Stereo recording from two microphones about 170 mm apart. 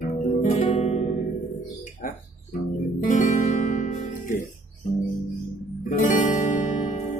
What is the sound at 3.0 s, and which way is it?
Music, 45° left (ahead or behind).